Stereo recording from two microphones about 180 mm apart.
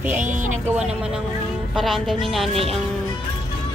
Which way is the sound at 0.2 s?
45° right (ahead or behind).